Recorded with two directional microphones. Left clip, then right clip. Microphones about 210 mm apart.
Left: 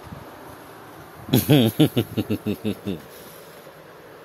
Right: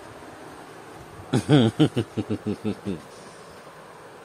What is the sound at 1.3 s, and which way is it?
Speech, 10° left (ahead or behind).